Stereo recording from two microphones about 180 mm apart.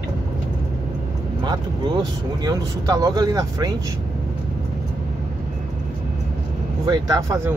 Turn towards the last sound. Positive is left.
turn(degrees=-20)  # may be behind; listen again after turning